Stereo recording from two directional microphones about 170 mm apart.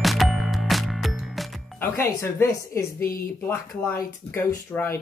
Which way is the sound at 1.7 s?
15° left (ahead or behind).